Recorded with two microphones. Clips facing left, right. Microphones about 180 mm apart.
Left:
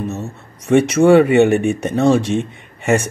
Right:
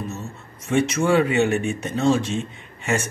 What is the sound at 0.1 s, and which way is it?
Speech, 65° left (ahead or behind).